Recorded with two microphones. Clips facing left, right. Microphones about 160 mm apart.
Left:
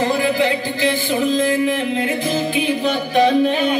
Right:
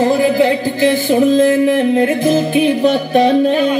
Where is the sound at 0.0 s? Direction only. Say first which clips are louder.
Right 6 dB; 40° right (ahead or behind).